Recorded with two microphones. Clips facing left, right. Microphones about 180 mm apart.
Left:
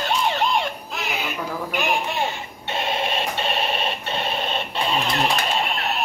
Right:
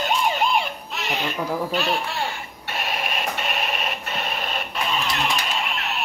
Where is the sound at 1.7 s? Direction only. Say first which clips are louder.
Even; 15° left (ahead or behind); by 6.0 s 40° left (ahead or behind).